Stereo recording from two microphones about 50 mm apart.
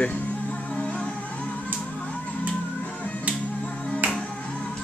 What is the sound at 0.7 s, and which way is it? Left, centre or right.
Music, left.